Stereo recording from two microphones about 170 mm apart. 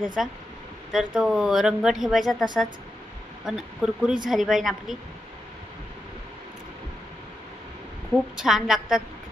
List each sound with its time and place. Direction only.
0.2 s speech: centre (ahead or behind)
8.4 s speech: centre (ahead or behind)